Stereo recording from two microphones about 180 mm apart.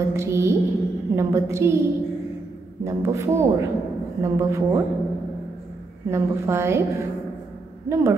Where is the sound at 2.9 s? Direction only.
15° right (ahead or behind).